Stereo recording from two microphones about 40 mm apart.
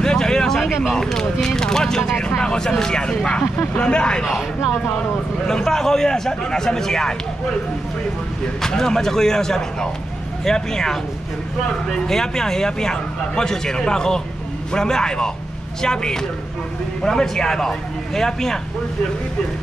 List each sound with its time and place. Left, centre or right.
0.0 s a sound: centre
0.9 s speech: centre
5.5 s speech: centre
8.6 s speech: centre